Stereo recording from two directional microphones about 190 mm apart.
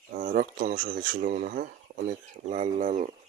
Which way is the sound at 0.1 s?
45° right (ahead or behind).